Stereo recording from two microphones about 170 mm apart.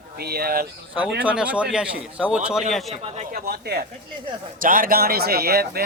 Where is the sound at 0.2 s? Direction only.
65° right (ahead or behind).